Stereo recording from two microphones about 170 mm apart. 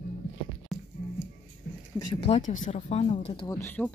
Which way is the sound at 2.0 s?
30° left (ahead or behind).